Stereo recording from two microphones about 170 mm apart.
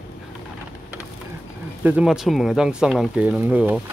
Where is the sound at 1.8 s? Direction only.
10° right (ahead or behind).